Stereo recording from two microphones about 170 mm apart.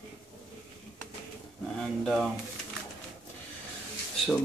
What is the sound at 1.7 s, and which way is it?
Speech, 5° left (ahead or behind).